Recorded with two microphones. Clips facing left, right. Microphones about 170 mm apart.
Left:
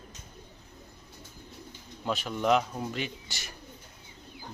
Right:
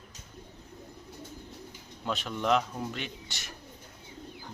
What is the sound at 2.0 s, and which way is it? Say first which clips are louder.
Speech: left 2 dB; centre (ahead or behind).